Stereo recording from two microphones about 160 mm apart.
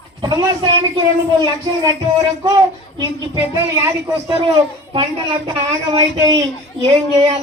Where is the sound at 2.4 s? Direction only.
25° right (ahead or behind).